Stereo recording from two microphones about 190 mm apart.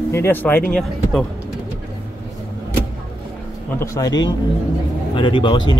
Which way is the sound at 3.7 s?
15° left (ahead or behind).